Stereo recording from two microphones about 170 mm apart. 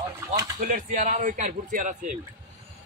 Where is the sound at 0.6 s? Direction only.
50° right (ahead or behind).